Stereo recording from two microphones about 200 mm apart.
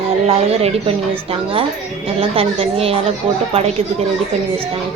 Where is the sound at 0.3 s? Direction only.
30° right (ahead or behind).